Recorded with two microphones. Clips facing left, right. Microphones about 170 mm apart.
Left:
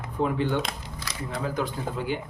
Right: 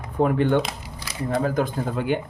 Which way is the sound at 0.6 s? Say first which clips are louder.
Right 1 dB; 5° right (ahead or behind).